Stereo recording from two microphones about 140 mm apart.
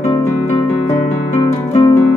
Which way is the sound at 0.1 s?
30° left (ahead or behind).